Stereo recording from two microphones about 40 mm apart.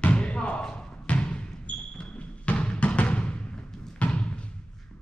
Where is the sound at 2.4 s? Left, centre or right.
Left.